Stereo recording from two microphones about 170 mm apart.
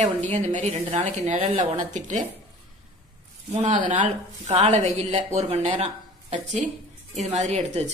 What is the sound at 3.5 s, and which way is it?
A woman's voice, 45° right (ahead or behind).